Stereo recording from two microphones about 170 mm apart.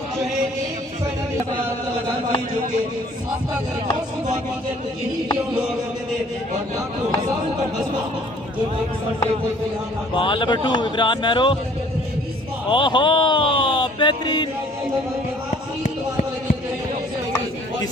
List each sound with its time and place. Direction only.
10.1 s speech: 30° left (ahead or behind)
12.6 s speech: 30° left (ahead or behind)